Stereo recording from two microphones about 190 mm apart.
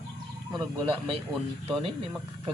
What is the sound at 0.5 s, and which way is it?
Speech, 25° right (ahead or behind).